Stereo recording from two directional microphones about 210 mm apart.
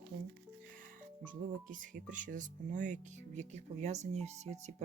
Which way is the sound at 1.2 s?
40° right (ahead or behind).